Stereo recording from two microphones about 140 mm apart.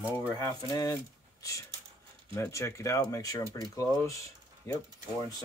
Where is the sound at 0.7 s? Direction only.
25° left (ahead or behind).